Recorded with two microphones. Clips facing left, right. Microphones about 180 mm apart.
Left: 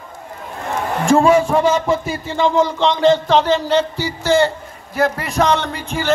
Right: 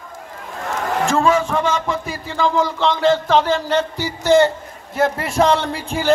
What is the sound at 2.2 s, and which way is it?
Speech, 25° left (ahead or behind).